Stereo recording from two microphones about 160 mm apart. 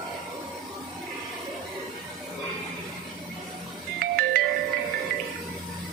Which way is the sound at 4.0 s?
70° right (ahead or behind).